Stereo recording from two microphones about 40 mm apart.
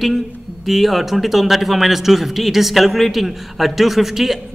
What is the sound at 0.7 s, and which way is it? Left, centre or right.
A man's voice, centre.